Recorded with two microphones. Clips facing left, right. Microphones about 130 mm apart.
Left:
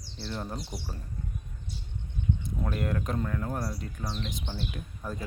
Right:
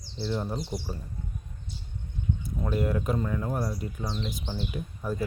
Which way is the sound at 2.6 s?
10° right (ahead or behind).